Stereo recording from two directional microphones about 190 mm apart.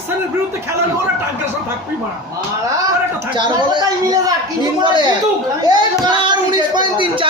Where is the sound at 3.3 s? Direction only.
20° right (ahead or behind).